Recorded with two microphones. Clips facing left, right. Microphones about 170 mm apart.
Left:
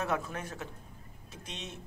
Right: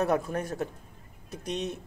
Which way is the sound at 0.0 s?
40° right (ahead or behind).